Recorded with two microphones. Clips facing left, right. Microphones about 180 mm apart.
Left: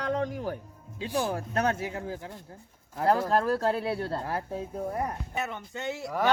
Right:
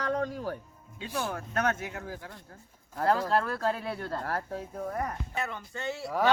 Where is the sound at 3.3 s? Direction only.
40° left (ahead or behind).